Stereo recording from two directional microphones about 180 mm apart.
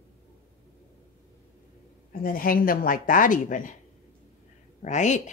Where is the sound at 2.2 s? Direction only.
50° left (ahead or behind).